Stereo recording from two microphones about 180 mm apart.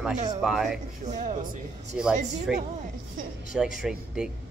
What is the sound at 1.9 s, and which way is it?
Speech, 5° right (ahead or behind).